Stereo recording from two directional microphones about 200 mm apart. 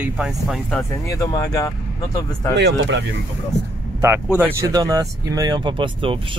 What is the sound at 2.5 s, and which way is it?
Speech, 60° right (ahead or behind).